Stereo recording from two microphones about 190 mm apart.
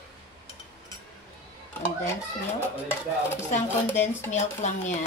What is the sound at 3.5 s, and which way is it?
Speech, 40° left (ahead or behind).